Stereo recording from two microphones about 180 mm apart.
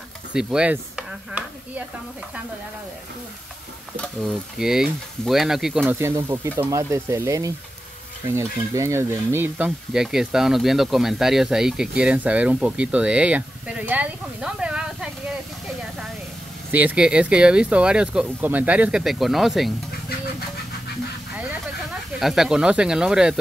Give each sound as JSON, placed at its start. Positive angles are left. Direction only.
{"t": 0.3, "sound": "speech", "side_deg": -5}
{"t": 4.6, "sound": "speech", "side_deg": 0}
{"t": 5.9, "sound": "speech", "side_deg": -15}
{"t": 16.7, "sound": "speech", "side_deg": -5}
{"t": 22.2, "sound": "speech", "side_deg": 0}